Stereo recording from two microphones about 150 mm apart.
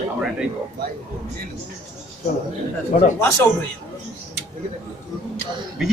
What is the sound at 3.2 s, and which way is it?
Speech, 20° left (ahead or behind).